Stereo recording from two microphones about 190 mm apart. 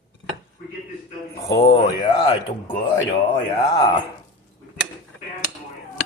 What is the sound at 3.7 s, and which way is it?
Speech, 20° left (ahead or behind).